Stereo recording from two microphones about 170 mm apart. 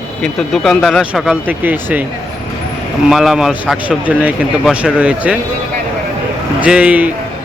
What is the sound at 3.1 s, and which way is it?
A man's voice, 5° right (ahead or behind).